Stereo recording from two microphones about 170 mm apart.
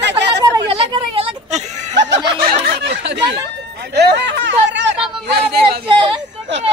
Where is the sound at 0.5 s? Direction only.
30° right (ahead or behind).